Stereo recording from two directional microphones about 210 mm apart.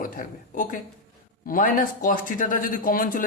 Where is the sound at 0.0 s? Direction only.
40° left (ahead or behind).